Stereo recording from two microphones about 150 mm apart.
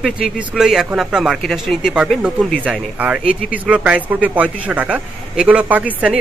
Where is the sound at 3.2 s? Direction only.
70° left (ahead or behind).